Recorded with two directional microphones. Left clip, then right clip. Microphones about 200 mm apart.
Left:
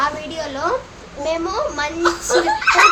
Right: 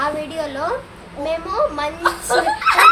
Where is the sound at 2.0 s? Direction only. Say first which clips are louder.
Left 1 dB; 15° right (ahead or behind).